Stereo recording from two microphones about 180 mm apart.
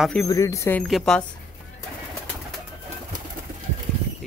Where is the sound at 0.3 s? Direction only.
20° left (ahead or behind).